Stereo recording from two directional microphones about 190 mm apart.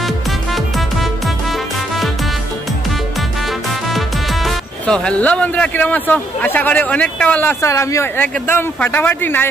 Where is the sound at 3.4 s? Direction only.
Centre (ahead or behind).